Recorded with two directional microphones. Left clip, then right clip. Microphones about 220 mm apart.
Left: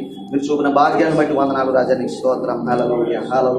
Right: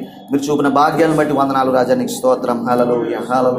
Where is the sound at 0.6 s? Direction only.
50° right (ahead or behind).